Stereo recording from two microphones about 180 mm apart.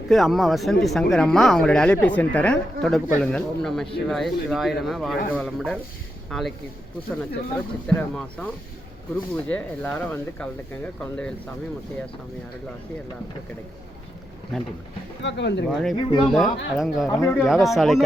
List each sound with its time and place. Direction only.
0.1 s speech: centre (ahead or behind)
9.5 s speech: 10° left (ahead or behind)
14.5 s speech: centre (ahead or behind)
15.2 s speech: 80° left
16.0 s speech: 30° left (ahead or behind)
16.3 s speech: centre (ahead or behind)
17.1 s speech: 20° left (ahead or behind)
17.3 s speech: centre (ahead or behind)